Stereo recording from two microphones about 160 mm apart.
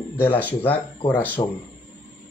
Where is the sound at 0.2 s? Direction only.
10° left (ahead or behind).